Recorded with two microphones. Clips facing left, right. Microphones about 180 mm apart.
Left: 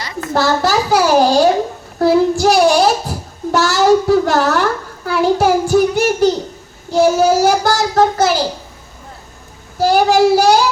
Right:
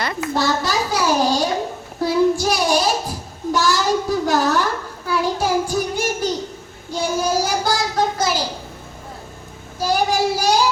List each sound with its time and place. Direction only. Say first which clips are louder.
0.3 s a child's voice: left 7 dB; 70° left (ahead or behind)
6.9 s child singing: left 9 dB; 70° left (ahead or behind)
9.8 s a child's voice: left 8 dB; 70° left (ahead or behind)